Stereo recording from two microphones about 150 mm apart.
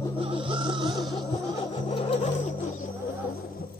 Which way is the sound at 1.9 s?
35° left (ahead or behind).